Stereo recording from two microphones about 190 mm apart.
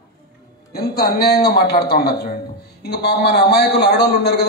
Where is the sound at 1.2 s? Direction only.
55° left (ahead or behind).